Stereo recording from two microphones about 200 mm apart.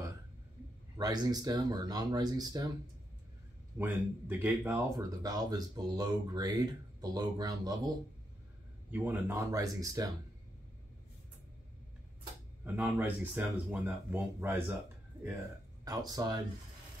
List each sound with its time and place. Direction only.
0.9 s speech: 20° right (ahead or behind)
3.7 s speech: 10° right (ahead or behind)
8.9 s speech: 10° right (ahead or behind)
12.7 s speech: 10° right (ahead or behind)
15.8 s speech: 20° right (ahead or behind)